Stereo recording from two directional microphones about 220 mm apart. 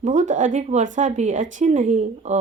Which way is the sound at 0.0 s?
35° right (ahead or behind).